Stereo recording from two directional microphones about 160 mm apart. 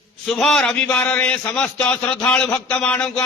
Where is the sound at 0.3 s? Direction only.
Centre (ahead or behind).